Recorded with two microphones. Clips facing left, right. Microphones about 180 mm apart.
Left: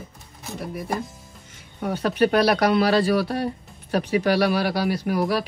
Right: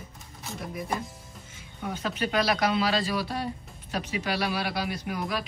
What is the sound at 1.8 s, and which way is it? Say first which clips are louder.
Speech: left 10 dB; 60° left (ahead or behind).